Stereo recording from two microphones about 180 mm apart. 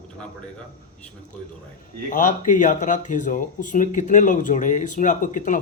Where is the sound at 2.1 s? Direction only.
45° left (ahead or behind).